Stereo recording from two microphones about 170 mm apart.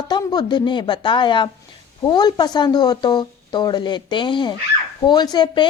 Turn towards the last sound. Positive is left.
turn(degrees=25)  # may be behind; listen again after turning